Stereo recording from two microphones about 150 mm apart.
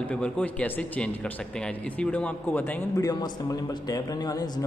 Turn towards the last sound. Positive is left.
turn(degrees=25)  # may be behind; listen again after turning